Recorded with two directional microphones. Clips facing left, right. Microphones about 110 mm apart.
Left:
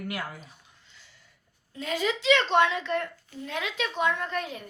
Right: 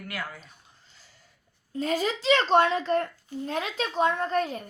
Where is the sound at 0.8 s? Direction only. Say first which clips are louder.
Left 1 dB; 40° right (ahead or behind).